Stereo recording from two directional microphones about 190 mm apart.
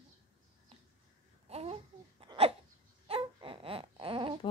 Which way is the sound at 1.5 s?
30° right (ahead or behind).